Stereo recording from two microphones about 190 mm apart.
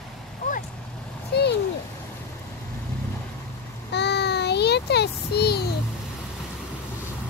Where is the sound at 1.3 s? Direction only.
60° left (ahead or behind).